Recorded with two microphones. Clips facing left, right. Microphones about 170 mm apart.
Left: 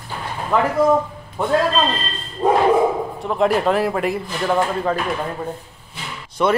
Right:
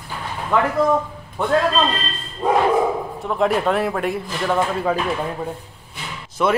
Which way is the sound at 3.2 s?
Centre (ahead or behind).